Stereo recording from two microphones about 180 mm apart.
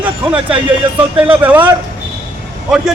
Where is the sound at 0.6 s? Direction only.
10° right (ahead or behind).